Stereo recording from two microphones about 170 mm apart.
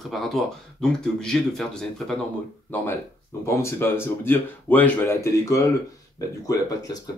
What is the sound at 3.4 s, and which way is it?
Speech, 15° left (ahead or behind).